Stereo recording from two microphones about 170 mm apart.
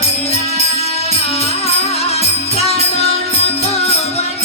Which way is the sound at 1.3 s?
35° left (ahead or behind).